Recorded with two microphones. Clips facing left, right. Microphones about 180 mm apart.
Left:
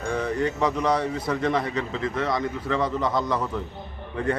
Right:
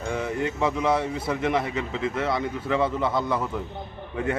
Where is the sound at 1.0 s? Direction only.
20° right (ahead or behind).